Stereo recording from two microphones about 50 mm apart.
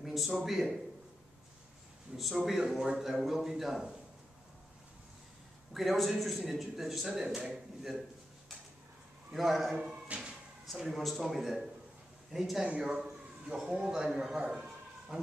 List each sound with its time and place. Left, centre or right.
0.0 s a man's voice: centre
2.1 s a man's voice: centre
5.7 s a man's voice: centre
9.3 s a man's voice: centre
10.0 s a sound: right
10.8 s a man's voice: centre